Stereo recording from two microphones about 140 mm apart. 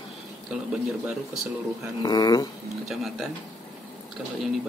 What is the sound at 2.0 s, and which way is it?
Speech, 30° left (ahead or behind).